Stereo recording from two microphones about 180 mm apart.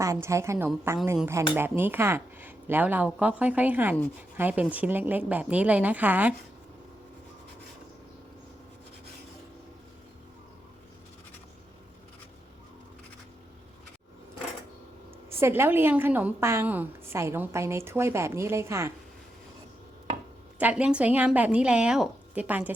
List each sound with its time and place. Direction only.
0.0 s a woman's voice: 15° right (ahead or behind)
15.3 s a woman's voice: 15° right (ahead or behind)
20.6 s a woman's voice: 10° right (ahead or behind)